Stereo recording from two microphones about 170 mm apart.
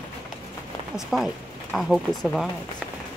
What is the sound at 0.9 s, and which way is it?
Speech, centre (ahead or behind).